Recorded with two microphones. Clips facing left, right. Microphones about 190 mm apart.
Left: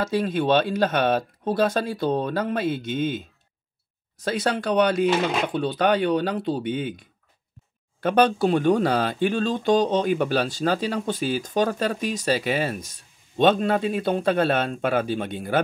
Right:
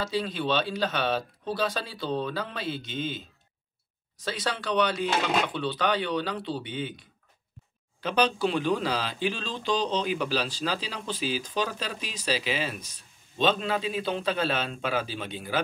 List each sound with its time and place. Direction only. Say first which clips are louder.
0.0 s a man's voice: left 6 dB; 55° left (ahead or behind)